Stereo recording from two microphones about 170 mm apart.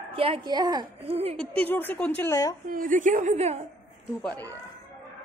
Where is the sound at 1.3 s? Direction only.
5° left (ahead or behind).